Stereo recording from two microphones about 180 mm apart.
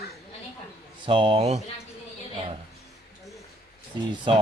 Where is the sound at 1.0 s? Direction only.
30° right (ahead or behind).